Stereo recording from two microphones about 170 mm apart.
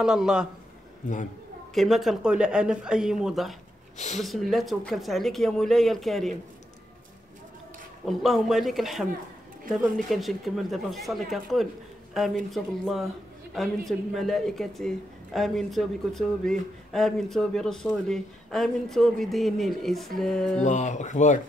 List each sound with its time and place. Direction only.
0.0 s speech: 5° right (ahead or behind)
1.7 s speech: centre (ahead or behind)
8.0 s speech: centre (ahead or behind)
10.0 s speech: centre (ahead or behind)
20.6 s speech: 45° left (ahead or behind)